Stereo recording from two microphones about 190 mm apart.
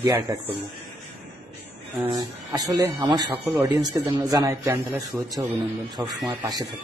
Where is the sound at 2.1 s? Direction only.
20° right (ahead or behind).